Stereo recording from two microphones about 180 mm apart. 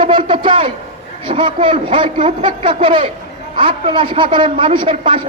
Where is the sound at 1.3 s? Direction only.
30° right (ahead or behind).